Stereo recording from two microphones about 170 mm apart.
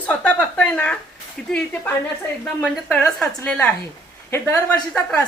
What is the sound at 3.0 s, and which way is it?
A woman's voice, 10° left (ahead or behind).